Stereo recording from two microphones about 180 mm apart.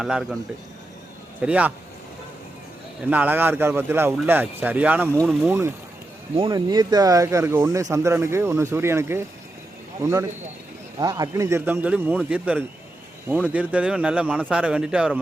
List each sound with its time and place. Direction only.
0.0 s speech: centre (ahead or behind)
1.4 s speech: 10° right (ahead or behind)
3.1 s speech: 10° right (ahead or behind)
5.1 s speech: centre (ahead or behind)
5.4 s speech: 15° right (ahead or behind)
6.3 s speech: 25° right (ahead or behind); by 15.2 s 5° right (ahead or behind)